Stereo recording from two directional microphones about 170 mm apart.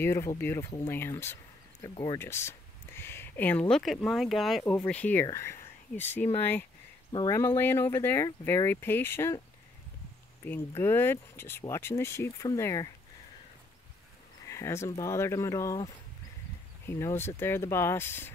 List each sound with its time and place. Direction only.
0.0 s speech: 15° left (ahead or behind)
10.4 s speech: 15° left (ahead or behind)
14.5 s speech: 15° left (ahead or behind)
16.8 s speech: 15° left (ahead or behind)